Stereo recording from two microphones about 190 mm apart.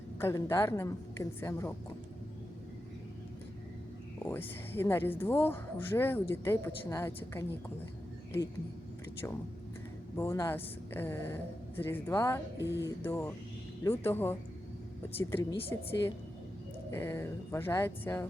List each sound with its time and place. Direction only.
0.2 s speech: 15° left (ahead or behind)
4.3 s speech: 10° left (ahead or behind)
10.2 s speech: 15° left (ahead or behind)